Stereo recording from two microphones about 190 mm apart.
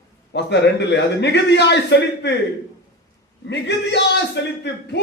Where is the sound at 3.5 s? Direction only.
65° left (ahead or behind).